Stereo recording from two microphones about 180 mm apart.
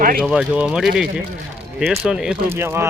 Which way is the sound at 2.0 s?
10° right (ahead or behind).